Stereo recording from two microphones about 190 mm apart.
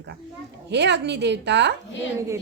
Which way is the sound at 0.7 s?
65° right (ahead or behind).